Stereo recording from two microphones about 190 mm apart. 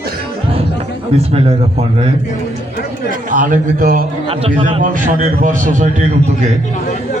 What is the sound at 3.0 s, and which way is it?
A man's voice, 45° right (ahead or behind).